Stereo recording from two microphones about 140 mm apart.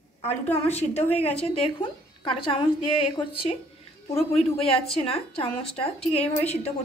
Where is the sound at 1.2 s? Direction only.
45° left (ahead or behind).